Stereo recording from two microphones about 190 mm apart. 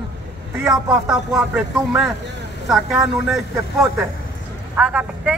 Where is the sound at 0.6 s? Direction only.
Centre (ahead or behind).